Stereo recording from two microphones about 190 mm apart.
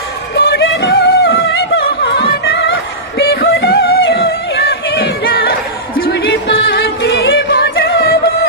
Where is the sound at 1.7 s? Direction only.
60° left (ahead or behind).